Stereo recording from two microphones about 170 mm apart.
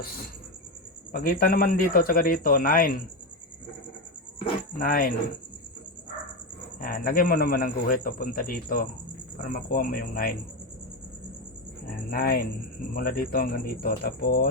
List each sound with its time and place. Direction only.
1.1 s speech: 60° left (ahead or behind)
4.8 s speech: 55° left (ahead or behind)
6.7 s speech: 55° left (ahead or behind)
11.9 s speech: 60° left (ahead or behind)